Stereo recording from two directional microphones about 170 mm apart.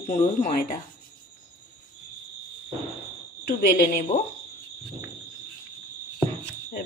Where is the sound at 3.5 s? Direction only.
60° left (ahead or behind).